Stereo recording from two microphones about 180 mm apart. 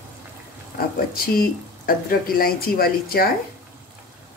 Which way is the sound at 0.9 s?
55° left (ahead or behind).